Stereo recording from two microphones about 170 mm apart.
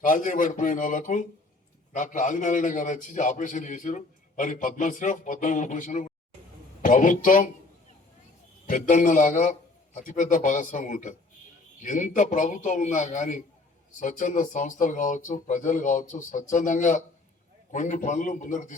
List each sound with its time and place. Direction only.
0.0 s a man's voice: 50° left (ahead or behind)
8.6 s a man's voice: 45° left (ahead or behind)